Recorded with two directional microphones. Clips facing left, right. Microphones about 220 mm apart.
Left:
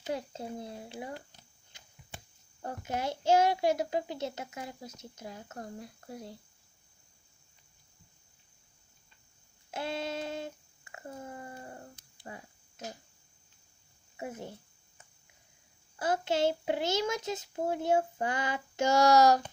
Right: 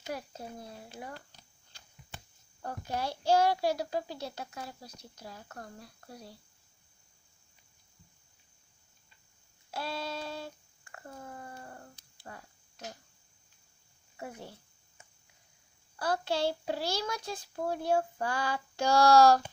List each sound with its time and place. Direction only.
0.0 s speech: 25° left (ahead or behind)
9.7 s a sound: 20° left (ahead or behind)
14.1 s speech: 20° left (ahead or behind)
16.0 s a child's voice: 20° left (ahead or behind)